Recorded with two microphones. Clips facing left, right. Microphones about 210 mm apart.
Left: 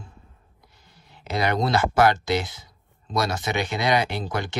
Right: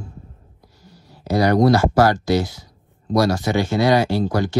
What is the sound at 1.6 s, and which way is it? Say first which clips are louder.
Speech: right 2 dB; 20° left (ahead or behind).